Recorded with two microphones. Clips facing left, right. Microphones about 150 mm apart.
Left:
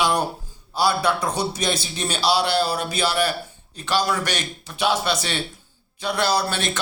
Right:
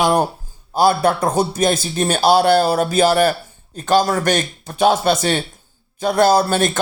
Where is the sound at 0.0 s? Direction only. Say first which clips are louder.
Right 5 dB; 50° right (ahead or behind).